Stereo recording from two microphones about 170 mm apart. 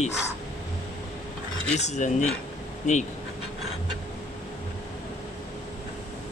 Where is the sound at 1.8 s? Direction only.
45° left (ahead or behind).